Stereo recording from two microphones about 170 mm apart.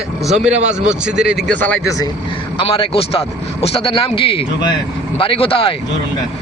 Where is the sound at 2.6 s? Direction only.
35° left (ahead or behind).